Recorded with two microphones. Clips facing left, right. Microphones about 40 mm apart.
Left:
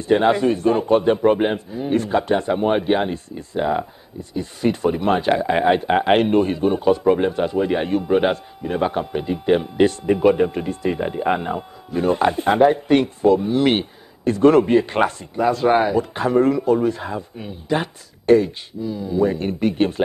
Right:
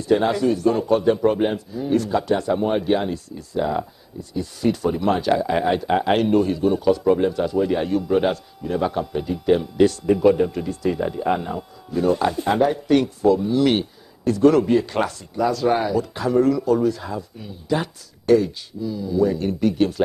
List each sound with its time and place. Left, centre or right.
0.0 s speech: left